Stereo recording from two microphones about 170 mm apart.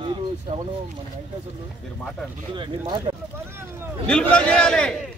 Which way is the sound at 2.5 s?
25° right (ahead or behind).